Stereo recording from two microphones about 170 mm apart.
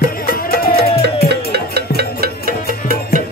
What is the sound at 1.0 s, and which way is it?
Music, 80° right.